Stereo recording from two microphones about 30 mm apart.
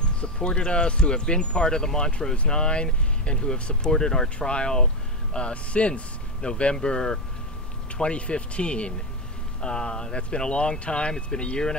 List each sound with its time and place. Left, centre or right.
0.2 s speech: left
4.4 s speech: left
5.3 s speech: left
6.4 s speech: left
9.6 s speech: left